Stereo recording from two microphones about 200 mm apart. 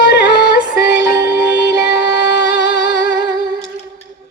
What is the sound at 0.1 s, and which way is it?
Music, 55° left (ahead or behind).